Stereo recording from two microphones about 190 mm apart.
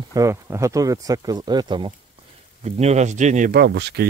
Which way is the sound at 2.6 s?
35° right (ahead or behind).